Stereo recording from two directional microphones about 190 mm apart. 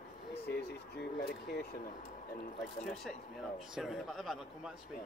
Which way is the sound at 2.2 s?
50° left (ahead or behind).